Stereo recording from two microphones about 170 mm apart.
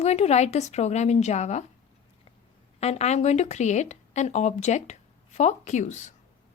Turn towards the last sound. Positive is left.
turn(degrees=45)  # may be behind; listen again after turning